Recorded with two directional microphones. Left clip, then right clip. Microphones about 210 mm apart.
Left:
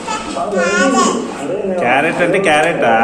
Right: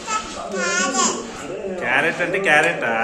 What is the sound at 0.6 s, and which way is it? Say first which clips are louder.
Babbling: left 7 dB; 15° right (ahead or behind).